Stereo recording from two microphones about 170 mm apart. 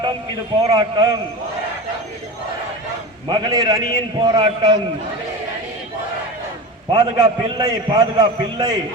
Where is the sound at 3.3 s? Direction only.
25° right (ahead or behind).